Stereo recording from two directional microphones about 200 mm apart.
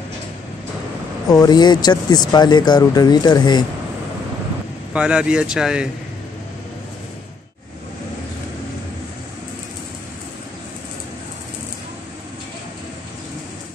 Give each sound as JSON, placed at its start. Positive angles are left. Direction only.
{"t": 1.2, "sound": "speech", "side_deg": 20}
{"t": 4.9, "sound": "speech", "side_deg": -5}